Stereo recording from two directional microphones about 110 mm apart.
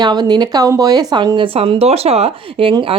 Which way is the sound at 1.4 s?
60° right (ahead or behind).